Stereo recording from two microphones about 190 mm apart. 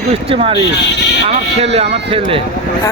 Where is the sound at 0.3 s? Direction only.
30° right (ahead or behind).